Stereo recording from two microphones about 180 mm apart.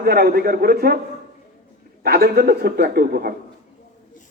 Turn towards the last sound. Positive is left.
turn(degrees=-55)  # may be behind; listen again after turning